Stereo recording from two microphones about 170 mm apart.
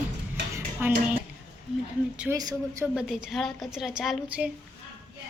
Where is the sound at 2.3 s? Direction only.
20° right (ahead or behind).